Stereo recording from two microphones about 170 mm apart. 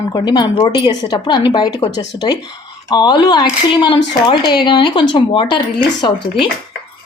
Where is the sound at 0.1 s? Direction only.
25° left (ahead or behind).